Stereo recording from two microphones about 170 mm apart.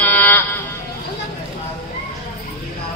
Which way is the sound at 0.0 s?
10° left (ahead or behind).